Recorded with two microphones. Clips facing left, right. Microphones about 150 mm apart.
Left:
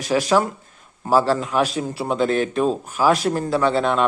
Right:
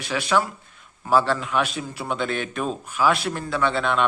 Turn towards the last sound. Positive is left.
turn(degrees=35)  # may be behind; listen again after turning